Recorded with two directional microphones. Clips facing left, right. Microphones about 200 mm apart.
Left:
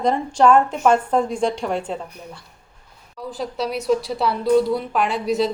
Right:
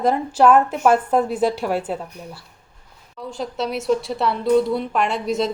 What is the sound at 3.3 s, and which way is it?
A woman's voice, centre (ahead or behind).